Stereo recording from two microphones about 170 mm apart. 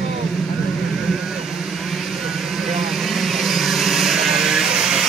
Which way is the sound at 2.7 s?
Centre (ahead or behind).